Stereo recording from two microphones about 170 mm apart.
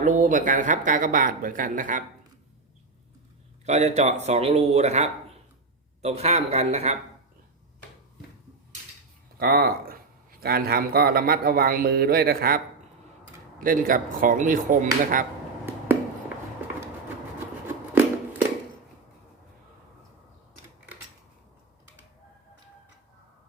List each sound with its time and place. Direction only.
0.0 s speech: 50° right (ahead or behind)
3.7 s speech: 40° right (ahead or behind)
9.4 s a man's voice: 65° right (ahead or behind)